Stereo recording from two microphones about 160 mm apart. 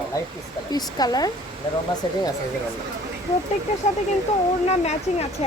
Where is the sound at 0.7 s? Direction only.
25° left (ahead or behind).